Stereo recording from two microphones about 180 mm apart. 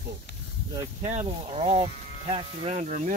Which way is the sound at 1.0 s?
35° right (ahead or behind).